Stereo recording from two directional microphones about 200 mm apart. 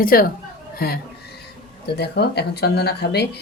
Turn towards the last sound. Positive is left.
turn(degrees=55)  # may be behind; listen again after turning